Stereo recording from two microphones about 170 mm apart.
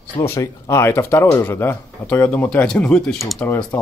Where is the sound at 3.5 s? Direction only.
15° left (ahead or behind).